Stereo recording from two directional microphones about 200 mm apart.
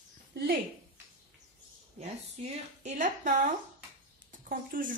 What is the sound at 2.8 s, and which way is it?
A woman's voice, 35° right (ahead or behind).